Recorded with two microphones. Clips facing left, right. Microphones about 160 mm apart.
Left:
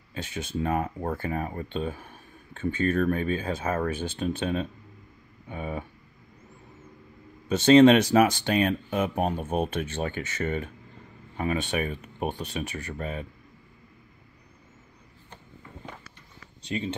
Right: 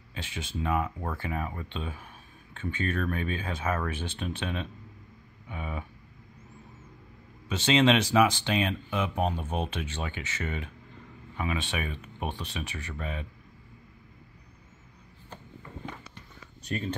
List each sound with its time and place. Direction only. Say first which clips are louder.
0.1 s speech: left 5 dB; 45° left (ahead or behind)
7.4 s speech: left 8 dB; 45° left (ahead or behind)
16.7 s speech: left 2 dB; 20° left (ahead or behind)